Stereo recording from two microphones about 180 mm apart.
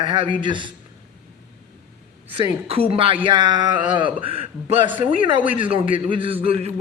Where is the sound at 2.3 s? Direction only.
35° right (ahead or behind).